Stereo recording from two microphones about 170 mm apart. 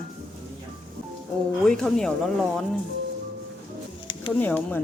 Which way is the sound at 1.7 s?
5° left (ahead or behind).